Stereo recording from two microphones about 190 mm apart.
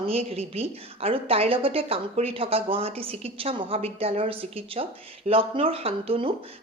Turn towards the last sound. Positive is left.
turn(degrees=-30)  # may be behind; listen again after turning